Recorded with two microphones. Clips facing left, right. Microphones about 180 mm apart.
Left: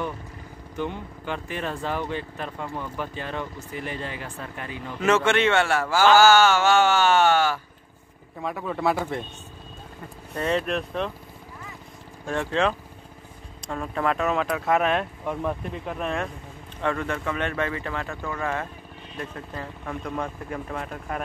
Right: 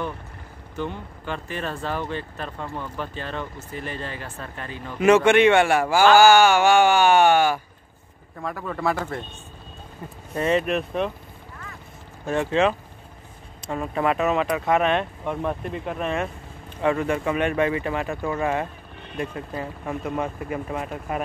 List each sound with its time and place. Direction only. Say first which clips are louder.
0.7 s speech: even; 15° left (ahead or behind)
5.0 s speech: right 6 dB; 15° right (ahead or behind)
8.4 s speech: left 1 dB; 5° left (ahead or behind)
10.3 s speech: right 3 dB; 5° right (ahead or behind)
12.3 s speech: right 3 dB; 5° right (ahead or behind)